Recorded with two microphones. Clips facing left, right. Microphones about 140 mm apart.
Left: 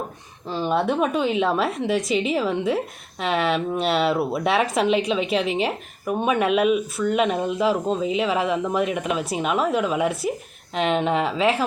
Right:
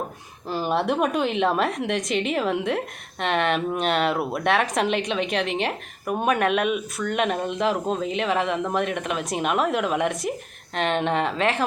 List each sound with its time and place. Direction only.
0.5 s speech: 5° right (ahead or behind)